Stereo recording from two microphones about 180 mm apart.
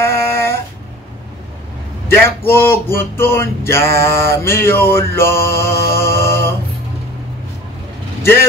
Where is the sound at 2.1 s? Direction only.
15° left (ahead or behind).